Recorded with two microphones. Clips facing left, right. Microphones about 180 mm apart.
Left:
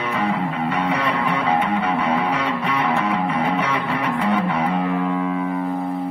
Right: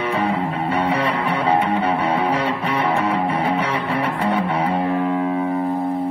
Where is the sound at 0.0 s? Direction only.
30° right (ahead or behind).